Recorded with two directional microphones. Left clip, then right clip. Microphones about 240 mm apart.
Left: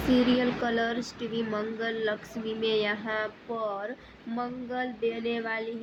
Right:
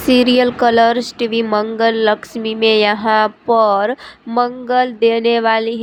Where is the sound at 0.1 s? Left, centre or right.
Right.